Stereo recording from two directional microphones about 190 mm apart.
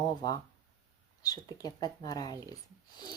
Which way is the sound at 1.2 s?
20° left (ahead or behind).